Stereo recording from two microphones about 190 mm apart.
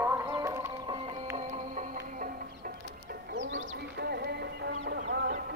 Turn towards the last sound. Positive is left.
turn(degrees=-55)  # may be behind; listen again after turning